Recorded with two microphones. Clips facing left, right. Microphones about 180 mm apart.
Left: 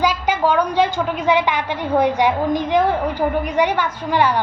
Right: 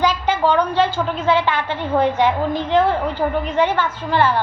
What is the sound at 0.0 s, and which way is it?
A woman's voice, 10° left (ahead or behind).